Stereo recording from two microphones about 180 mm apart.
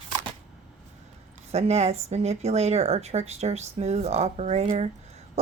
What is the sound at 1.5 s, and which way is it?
A woman's voice, 35° right (ahead or behind).